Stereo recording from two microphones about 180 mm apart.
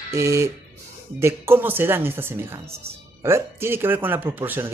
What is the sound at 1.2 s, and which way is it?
Speech, 15° right (ahead or behind).